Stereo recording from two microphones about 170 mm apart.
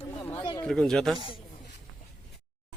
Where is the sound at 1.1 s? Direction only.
30° left (ahead or behind).